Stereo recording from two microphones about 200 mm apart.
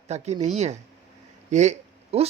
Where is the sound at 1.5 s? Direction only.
35° right (ahead or behind).